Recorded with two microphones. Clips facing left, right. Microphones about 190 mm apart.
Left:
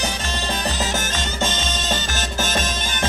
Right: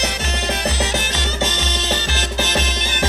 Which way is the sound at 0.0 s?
70° right (ahead or behind).